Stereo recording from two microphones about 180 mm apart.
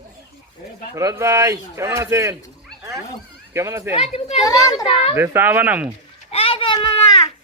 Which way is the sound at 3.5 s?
15° right (ahead or behind).